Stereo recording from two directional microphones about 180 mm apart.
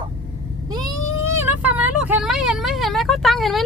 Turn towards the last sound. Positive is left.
turn(degrees=0)  # may be behind; listen again after turning